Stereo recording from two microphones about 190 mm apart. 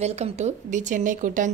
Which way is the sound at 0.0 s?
35° right (ahead or behind).